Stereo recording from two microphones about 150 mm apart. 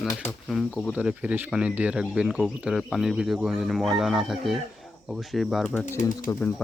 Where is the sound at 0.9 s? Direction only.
10° right (ahead or behind); by 6.6 s 10° left (ahead or behind).